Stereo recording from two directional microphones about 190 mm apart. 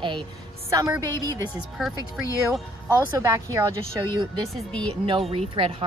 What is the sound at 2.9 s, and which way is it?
Speech, 15° right (ahead or behind).